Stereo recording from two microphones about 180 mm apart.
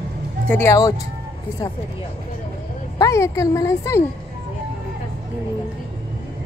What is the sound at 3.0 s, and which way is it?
A woman's voice, 15° left (ahead or behind).